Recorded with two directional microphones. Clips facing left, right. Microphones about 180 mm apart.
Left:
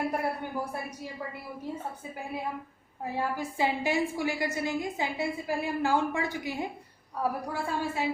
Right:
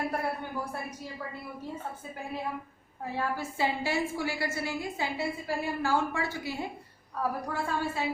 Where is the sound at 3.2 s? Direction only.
15° left (ahead or behind).